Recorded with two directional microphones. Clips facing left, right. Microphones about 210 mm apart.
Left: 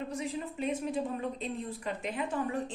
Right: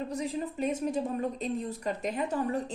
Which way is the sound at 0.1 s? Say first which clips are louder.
Right 3 dB; 40° right (ahead or behind).